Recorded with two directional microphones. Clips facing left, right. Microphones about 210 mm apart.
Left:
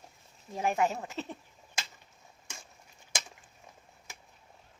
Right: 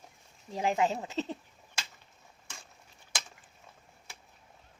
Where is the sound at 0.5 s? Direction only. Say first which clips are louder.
Right 1 dB; 15° right (ahead or behind).